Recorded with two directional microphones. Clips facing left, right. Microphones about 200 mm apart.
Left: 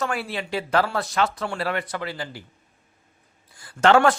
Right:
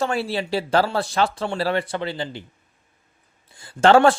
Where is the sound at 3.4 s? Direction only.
25° right (ahead or behind).